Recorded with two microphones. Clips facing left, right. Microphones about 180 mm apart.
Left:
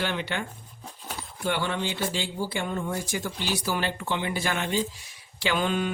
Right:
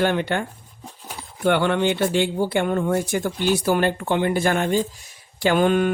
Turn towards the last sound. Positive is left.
turn(degrees=-55)  # may be behind; listen again after turning